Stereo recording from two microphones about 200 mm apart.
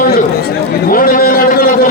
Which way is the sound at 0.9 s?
45° left (ahead or behind).